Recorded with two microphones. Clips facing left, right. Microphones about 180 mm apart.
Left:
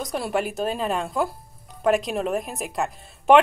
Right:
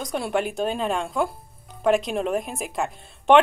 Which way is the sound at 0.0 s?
Centre (ahead or behind).